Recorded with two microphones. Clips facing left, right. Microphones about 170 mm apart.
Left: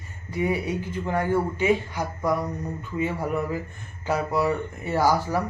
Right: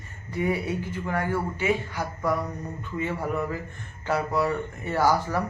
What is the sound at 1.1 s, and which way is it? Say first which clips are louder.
Speech: left 4 dB; 20° left (ahead or behind).